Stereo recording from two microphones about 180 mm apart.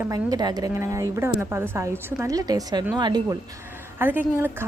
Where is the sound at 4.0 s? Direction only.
10° right (ahead or behind).